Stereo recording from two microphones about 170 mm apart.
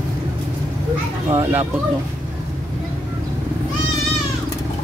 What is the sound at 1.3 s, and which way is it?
Children playing, 15° right (ahead or behind).